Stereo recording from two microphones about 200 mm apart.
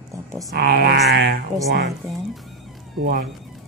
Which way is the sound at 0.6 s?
55° right (ahead or behind).